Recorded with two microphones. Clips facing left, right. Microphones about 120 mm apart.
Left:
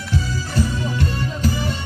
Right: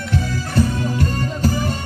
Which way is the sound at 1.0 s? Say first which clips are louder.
Right 2 dB; 45° right (ahead or behind).